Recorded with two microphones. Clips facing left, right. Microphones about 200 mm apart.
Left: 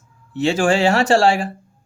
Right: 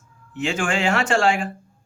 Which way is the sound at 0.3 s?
35° left (ahead or behind).